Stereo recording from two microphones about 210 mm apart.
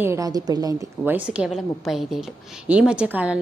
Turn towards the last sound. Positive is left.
turn(degrees=-5)  # may be behind; listen again after turning